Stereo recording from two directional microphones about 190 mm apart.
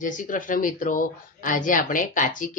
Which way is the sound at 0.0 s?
45° left (ahead or behind).